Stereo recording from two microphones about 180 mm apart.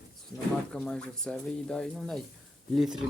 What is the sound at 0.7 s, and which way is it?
Speech, 5° left (ahead or behind).